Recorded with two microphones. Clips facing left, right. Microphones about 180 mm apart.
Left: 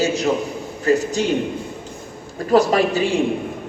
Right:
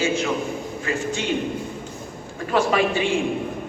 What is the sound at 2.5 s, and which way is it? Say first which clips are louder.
Speech: left 5 dB; 40° left (ahead or behind).